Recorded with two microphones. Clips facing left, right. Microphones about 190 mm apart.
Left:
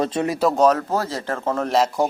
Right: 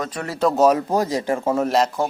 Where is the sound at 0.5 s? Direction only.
10° right (ahead or behind).